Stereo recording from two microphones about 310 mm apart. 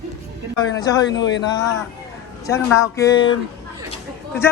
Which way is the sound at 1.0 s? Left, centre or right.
Left.